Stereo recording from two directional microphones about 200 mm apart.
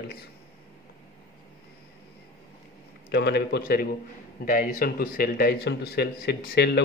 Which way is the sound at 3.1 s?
55° left (ahead or behind).